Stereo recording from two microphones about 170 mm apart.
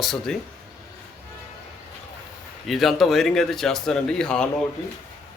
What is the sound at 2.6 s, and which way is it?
A man's voice, centre (ahead or behind).